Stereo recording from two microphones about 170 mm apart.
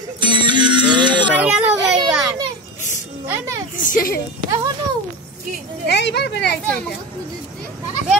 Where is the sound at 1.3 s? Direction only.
10° right (ahead or behind).